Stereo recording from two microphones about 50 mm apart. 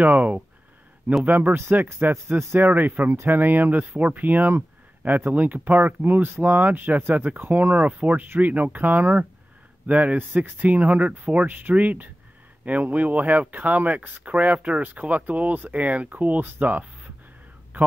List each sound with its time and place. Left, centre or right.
0.0 s speech: right
2.0 s speech: right
3.3 s speech: right